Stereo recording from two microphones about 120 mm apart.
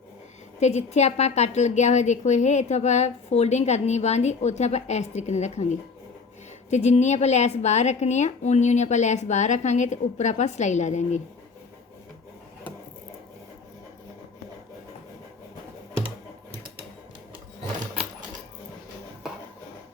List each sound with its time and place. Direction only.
0.6 s a woman's voice: 70° left (ahead or behind)
6.7 s a woman's voice: 70° left (ahead or behind)